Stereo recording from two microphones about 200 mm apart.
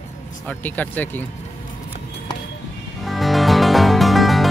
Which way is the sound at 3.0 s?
Centre (ahead or behind).